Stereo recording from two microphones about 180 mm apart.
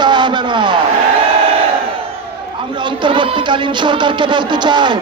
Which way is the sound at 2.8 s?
25° right (ahead or behind).